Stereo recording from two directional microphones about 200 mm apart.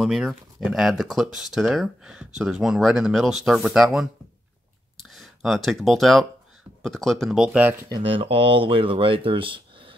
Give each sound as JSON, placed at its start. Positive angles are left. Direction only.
{"t": 0.0, "sound": "speech", "side_deg": 0}
{"t": 4.9, "sound": "a sound", "side_deg": 0}
{"t": 6.8, "sound": "speech", "side_deg": 0}
{"t": 7.9, "sound": "speech", "side_deg": -25}